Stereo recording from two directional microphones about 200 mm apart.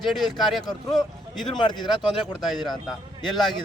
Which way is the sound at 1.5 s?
20° left (ahead or behind).